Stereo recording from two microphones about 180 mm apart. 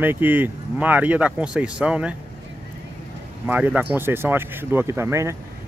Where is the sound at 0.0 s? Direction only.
10° right (ahead or behind).